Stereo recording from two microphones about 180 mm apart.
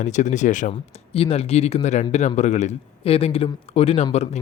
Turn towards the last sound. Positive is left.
turn(degrees=35)  # may be behind; listen again after turning